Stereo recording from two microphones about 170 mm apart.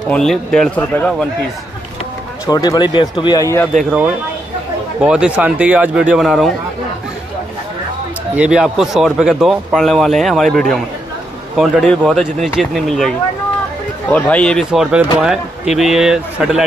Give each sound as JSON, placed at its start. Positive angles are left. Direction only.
{"t": 0.1, "sound": "speech", "side_deg": 5}
{"t": 2.4, "sound": "speech", "side_deg": 20}
{"t": 3.7, "sound": "speech", "side_deg": -5}
{"t": 8.4, "sound": "speech", "side_deg": -5}
{"t": 14.1, "sound": "speech", "side_deg": 5}